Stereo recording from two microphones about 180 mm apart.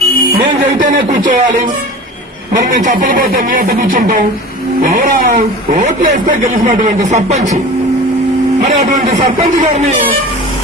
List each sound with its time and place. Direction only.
0.8 s speech: 45° right (ahead or behind)
2.6 s speech: 45° right (ahead or behind)
8.6 s speech: 40° right (ahead or behind)